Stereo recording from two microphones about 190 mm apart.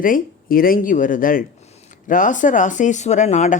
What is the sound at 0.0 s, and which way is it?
Speech, 50° left (ahead or behind).